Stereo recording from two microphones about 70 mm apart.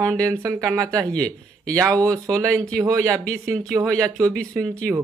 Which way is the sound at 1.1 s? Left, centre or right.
Centre.